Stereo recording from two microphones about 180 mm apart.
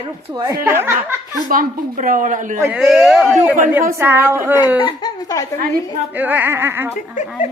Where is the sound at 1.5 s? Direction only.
50° right (ahead or behind).